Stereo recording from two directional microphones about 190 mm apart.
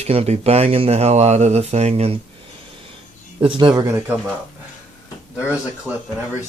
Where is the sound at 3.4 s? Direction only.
25° right (ahead or behind).